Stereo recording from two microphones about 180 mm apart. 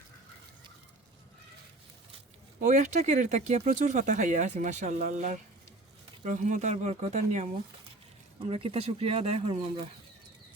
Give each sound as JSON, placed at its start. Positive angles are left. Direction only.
{"t": 2.6, "sound": "speech", "side_deg": -40}
{"t": 8.4, "sound": "speech", "side_deg": -35}